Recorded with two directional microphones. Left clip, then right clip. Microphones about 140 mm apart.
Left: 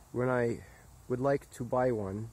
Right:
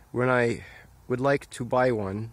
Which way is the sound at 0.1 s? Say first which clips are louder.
Right 7 dB; 20° right (ahead or behind).